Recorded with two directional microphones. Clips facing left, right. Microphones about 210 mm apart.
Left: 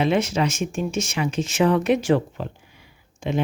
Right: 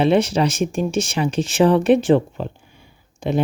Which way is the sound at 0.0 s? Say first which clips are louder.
Right 4 dB; 30° right (ahead or behind).